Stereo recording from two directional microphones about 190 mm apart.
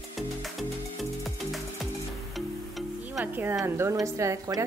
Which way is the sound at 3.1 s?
10° right (ahead or behind).